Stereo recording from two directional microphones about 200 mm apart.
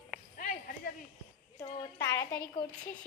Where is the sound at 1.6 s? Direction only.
15° left (ahead or behind).